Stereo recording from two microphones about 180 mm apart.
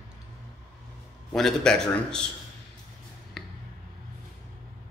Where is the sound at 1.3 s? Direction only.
5° left (ahead or behind).